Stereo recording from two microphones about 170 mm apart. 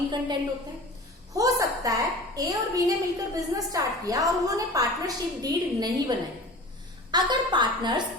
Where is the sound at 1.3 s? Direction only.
20° right (ahead or behind).